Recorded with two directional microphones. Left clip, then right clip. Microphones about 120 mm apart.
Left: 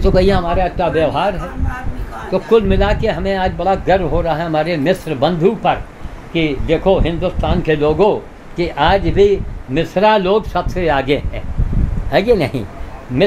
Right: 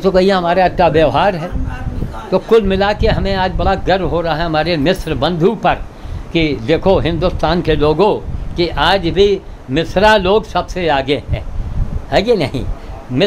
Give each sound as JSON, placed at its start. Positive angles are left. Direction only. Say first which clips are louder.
{"t": 0.0, "sound": "speech", "louder": "right 2 dB", "side_deg": -20}
{"t": 0.6, "sound": "speech", "louder": "right 5 dB", "side_deg": -45}
{"t": 2.3, "sound": "speech", "louder": "right 3 dB", "side_deg": -30}
{"t": 2.7, "sound": "speech", "louder": "right 2 dB", "side_deg": -5}
{"t": 5.4, "sound": "speech", "louder": "right 1 dB", "side_deg": -35}
{"t": 7.6, "sound": "speech", "louder": "left 1 dB", "side_deg": -20}
{"t": 9.8, "sound": "speech", "louder": "right 2 dB", "side_deg": -10}
{"t": 10.5, "sound": "speech", "louder": "right 1 dB", "side_deg": 5}